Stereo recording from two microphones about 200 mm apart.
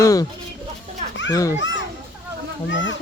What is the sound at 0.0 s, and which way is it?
Music, 15° left (ahead or behind).